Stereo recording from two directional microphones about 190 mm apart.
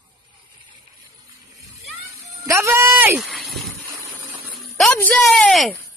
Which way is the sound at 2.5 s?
15° right (ahead or behind).